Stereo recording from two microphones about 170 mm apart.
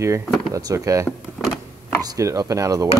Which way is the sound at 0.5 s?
20° right (ahead or behind).